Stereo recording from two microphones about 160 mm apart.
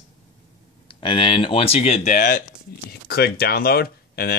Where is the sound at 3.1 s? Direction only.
85° left.